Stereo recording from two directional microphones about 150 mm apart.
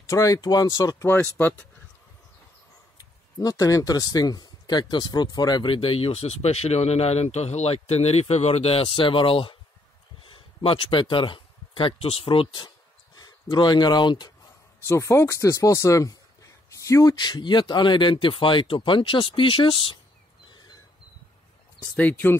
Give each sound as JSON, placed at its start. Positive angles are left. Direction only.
{"t": 0.0, "sound": "speech", "side_deg": 20}
{"t": 1.0, "sound": "speech", "side_deg": 15}
{"t": 3.0, "sound": "speech", "side_deg": 25}
{"t": 14.9, "sound": "speech", "side_deg": 20}
{"t": 21.9, "sound": "speech", "side_deg": 10}